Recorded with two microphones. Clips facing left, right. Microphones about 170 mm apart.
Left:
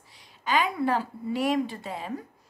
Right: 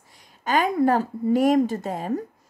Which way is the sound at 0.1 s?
45° right (ahead or behind).